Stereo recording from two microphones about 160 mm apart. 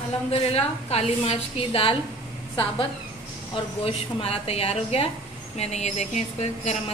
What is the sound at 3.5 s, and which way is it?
A woman's voice, 35° left (ahead or behind).